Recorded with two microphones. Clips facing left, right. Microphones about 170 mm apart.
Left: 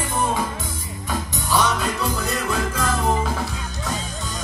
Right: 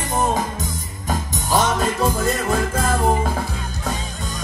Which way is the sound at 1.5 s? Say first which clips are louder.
Right 2 dB; 45° right (ahead or behind).